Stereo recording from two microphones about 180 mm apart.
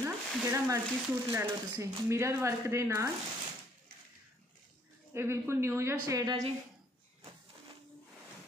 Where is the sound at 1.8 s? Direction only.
15° right (ahead or behind).